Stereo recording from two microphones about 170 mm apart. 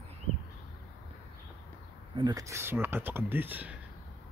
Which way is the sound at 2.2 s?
20° right (ahead or behind).